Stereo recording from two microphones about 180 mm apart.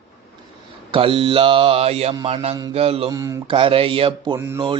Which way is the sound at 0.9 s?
30° right (ahead or behind).